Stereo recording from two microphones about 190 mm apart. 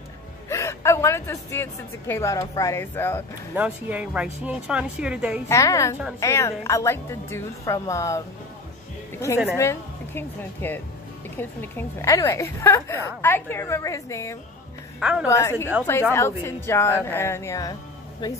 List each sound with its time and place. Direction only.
0.5 s a woman's voice: 15° left (ahead or behind)
3.5 s speech: 10° right (ahead or behind)
5.5 s a woman's voice: 15° left (ahead or behind)
9.6 s a woman's voice: 15° left (ahead or behind)
15.0 s a woman's voice: 5° right (ahead or behind)
15.2 s a woman's voice: 15° left (ahead or behind)